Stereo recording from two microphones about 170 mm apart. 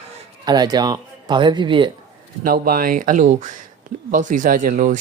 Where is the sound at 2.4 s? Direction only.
60° right (ahead or behind).